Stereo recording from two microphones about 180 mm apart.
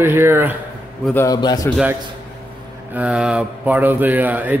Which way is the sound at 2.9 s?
5° right (ahead or behind).